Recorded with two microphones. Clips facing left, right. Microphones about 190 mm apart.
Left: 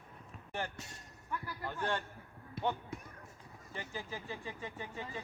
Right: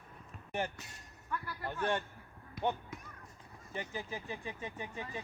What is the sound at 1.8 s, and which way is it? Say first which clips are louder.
Speech: right 3 dB; 20° right (ahead or behind).